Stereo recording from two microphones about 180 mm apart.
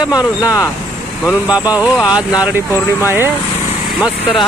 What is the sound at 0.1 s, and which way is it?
Speech, 20° left (ahead or behind).